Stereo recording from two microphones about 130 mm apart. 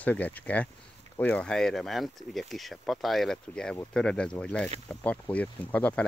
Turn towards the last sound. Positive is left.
turn(degrees=10)  # may be behind; listen again after turning